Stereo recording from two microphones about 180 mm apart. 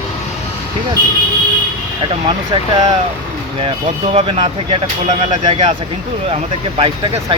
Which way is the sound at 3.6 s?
35° right (ahead or behind).